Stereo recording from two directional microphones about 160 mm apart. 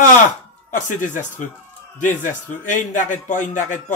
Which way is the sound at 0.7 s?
55° left (ahead or behind).